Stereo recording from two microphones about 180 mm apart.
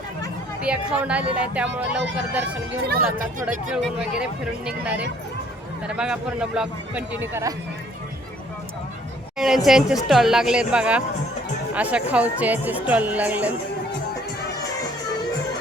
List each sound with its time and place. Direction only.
0.6 s speech: 5° right (ahead or behind)
2.8 s speech: 55° right (ahead or behind)
3.7 s a man's voice: 5° right (ahead or behind)
9.6 s a man's voice: centre (ahead or behind)